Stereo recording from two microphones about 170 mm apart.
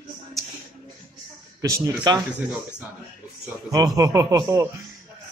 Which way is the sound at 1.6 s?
15° right (ahead or behind).